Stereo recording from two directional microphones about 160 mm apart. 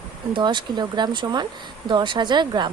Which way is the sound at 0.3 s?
30° right (ahead or behind).